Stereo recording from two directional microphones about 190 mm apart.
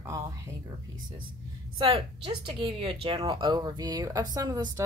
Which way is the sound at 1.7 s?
30° right (ahead or behind).